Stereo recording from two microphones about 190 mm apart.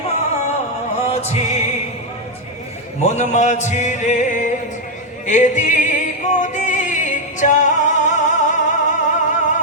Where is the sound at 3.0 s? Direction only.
40° left (ahead or behind).